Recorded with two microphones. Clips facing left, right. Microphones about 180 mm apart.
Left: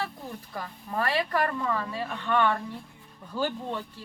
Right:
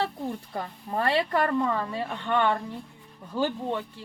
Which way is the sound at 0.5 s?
25° right (ahead or behind).